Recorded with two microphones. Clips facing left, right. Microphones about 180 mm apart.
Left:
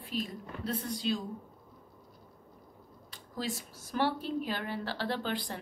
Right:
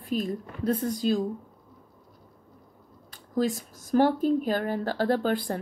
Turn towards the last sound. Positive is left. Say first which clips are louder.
# right 9 dB
turn(degrees=-45)  # may be behind; listen again after turning